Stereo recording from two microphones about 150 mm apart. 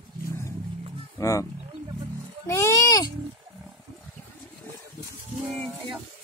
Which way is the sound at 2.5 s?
20° left (ahead or behind).